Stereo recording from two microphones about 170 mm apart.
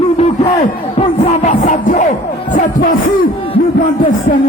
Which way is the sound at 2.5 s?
55° left (ahead or behind).